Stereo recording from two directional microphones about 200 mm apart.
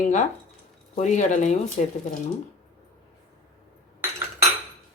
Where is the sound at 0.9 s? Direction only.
35° left (ahead or behind).